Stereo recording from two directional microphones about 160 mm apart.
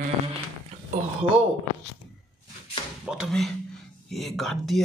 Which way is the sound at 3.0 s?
5° right (ahead or behind).